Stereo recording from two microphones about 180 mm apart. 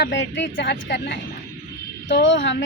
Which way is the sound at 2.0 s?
85° left.